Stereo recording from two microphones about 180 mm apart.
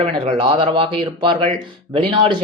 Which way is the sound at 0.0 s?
30° right (ahead or behind).